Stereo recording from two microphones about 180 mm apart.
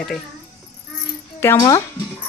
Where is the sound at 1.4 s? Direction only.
15° left (ahead or behind).